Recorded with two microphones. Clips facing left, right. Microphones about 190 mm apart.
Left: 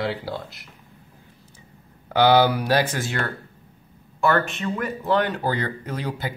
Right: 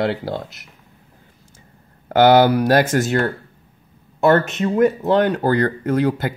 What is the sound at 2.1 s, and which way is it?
Speech, 50° right (ahead or behind).